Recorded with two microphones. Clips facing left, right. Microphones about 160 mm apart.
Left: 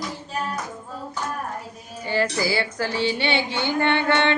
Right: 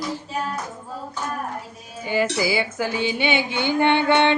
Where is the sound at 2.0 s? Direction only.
15° right (ahead or behind).